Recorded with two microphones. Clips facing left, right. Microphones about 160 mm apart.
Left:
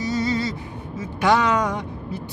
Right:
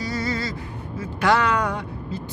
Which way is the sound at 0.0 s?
20° left (ahead or behind).